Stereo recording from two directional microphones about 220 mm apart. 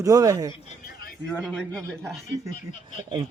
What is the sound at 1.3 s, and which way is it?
Speech, centre (ahead or behind).